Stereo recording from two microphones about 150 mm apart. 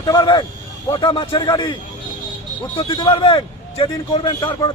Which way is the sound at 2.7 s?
30° left (ahead or behind).